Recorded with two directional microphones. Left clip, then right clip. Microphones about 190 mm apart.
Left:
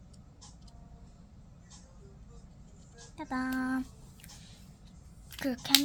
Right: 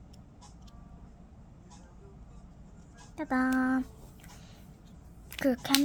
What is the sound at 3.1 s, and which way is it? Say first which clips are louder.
Child singing: right 6 dB; 25° right (ahead or behind).